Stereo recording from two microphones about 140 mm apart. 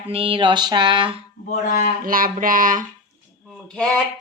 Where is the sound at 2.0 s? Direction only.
90° right; by 2.8 s 70° right (ahead or behind).